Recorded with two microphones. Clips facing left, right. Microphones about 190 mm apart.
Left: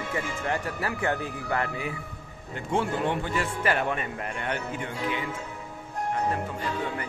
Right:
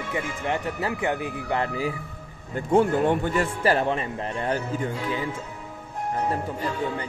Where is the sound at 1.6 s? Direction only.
30° right (ahead or behind).